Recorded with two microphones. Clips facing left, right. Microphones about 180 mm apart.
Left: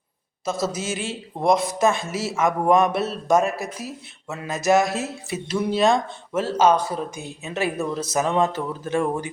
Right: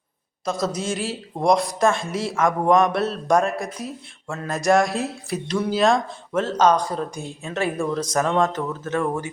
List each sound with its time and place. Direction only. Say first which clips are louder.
0.4 s a man's voice: right 1 dB; 5° left (ahead or behind)